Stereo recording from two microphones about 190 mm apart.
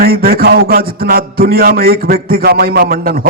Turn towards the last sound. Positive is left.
turn(degrees=-50)  # may be behind; listen again after turning